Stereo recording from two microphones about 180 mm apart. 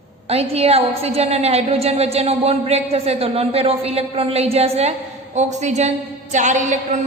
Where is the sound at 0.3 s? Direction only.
35° right (ahead or behind).